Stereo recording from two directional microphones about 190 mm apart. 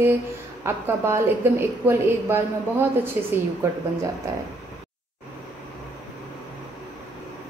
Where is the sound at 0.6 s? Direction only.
15° right (ahead or behind).